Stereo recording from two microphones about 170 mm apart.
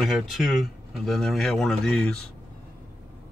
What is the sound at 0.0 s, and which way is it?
Speech, centre (ahead or behind).